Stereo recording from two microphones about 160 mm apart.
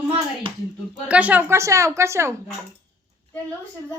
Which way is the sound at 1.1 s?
10° right (ahead or behind).